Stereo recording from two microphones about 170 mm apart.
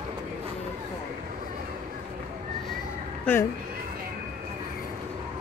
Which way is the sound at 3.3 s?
10° left (ahead or behind).